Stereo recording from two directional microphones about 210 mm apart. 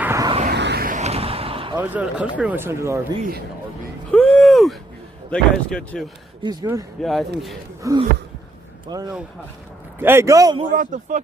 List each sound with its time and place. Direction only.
0.0 s a sound: 15° right (ahead or behind)
0.5 s a sound: 50° right (ahead or behind); by 1.8 s 25° right (ahead or behind)
1.8 s speech: 5° right (ahead or behind)
4.1 s a sound: 5° left (ahead or behind)
5.3 s speech: 5° left (ahead or behind)
6.4 s speech: 20° right (ahead or behind)
7.0 s speech: centre (ahead or behind)
7.8 s speech: 15° right (ahead or behind)
10.7 s speech: 40° right (ahead or behind)